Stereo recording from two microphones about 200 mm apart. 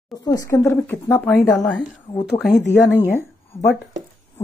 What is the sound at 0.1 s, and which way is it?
Speech, 20° left (ahead or behind).